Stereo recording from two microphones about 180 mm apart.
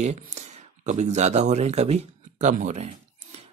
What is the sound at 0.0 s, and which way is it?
Speech, 40° right (ahead or behind).